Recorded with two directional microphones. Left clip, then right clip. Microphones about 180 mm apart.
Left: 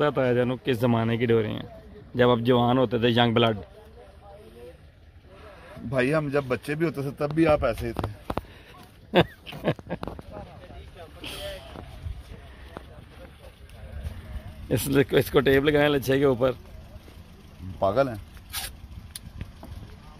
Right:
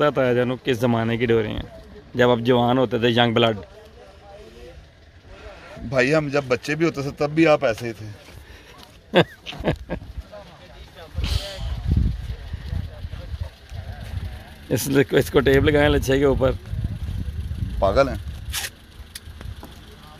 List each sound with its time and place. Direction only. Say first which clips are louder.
0.0 s a man's voice: right 4 dB; centre (ahead or behind)
5.7 s a man's voice: right 5 dB; 10° right (ahead or behind)
9.1 s pig: right 4 dB; centre (ahead or behind)
14.7 s a man's voice: right 3 dB; 5° right (ahead or behind)
17.7 s speech: right 5 dB; 20° right (ahead or behind)